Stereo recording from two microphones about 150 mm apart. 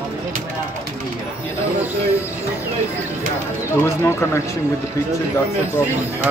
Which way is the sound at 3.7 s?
15° left (ahead or behind).